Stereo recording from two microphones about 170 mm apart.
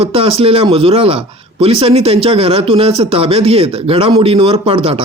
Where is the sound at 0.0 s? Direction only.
35° right (ahead or behind).